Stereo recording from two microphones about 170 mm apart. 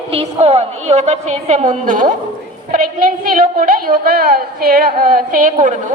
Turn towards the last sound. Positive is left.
turn(degrees=-50)  # may be behind; listen again after turning